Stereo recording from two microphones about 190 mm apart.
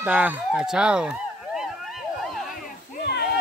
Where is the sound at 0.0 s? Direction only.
10° right (ahead or behind).